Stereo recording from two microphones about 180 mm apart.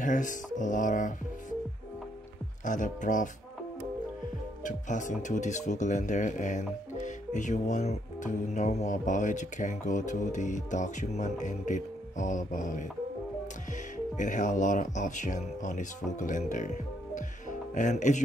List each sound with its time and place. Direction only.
0.0 s speech: 45° left (ahead or behind)
2.6 s speech: 45° left (ahead or behind)
4.6 s speech: 45° left (ahead or behind)
14.1 s speech: 45° left (ahead or behind)